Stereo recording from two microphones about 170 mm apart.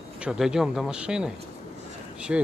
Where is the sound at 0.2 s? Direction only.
5° right (ahead or behind).